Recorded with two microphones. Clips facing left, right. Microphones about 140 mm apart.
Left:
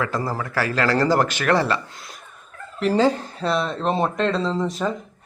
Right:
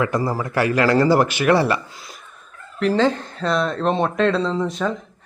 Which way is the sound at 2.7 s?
5° left (ahead or behind).